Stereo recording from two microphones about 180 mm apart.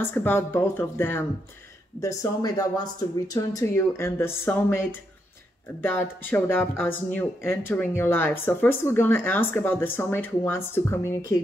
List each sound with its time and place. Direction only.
0.0 s speech: 10° left (ahead or behind)